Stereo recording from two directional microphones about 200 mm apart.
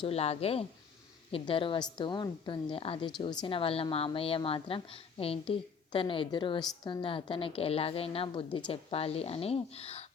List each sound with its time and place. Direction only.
0.0 s a woman's voice: 30° left (ahead or behind)